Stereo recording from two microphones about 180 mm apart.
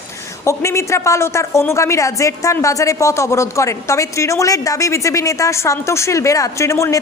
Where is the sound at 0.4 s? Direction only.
15° left (ahead or behind).